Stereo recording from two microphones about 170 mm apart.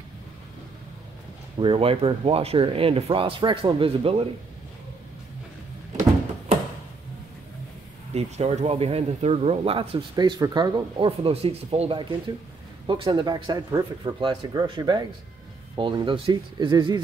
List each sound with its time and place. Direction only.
1.6 s speech: 35° right (ahead or behind)
8.1 s speech: 40° right (ahead or behind)